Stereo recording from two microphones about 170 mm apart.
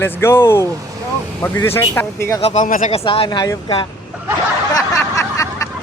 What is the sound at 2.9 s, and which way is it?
Speech, 35° left (ahead or behind).